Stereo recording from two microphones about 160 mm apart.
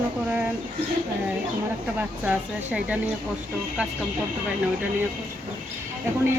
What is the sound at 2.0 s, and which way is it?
Speech, 10° right (ahead or behind).